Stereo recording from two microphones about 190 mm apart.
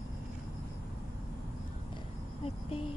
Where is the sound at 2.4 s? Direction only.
30° left (ahead or behind).